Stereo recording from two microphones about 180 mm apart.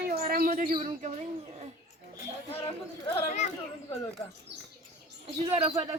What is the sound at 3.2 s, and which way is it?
Speech, 40° left (ahead or behind).